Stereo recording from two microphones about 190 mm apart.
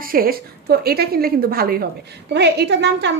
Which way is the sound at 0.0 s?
50° right (ahead or behind).